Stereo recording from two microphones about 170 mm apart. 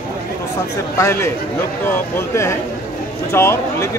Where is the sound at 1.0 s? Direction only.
15° left (ahead or behind).